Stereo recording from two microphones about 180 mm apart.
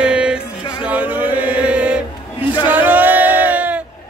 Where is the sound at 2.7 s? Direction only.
10° right (ahead or behind).